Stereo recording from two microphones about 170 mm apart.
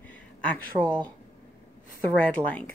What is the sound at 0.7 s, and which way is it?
Speech, 25° right (ahead or behind).